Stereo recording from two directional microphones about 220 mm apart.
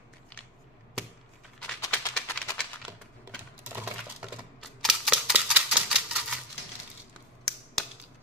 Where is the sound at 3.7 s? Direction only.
10° right (ahead or behind).